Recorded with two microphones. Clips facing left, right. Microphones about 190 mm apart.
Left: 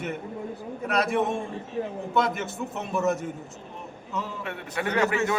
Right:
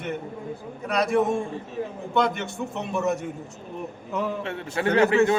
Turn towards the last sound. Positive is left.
turn(degrees=-30)  # may be behind; listen again after turning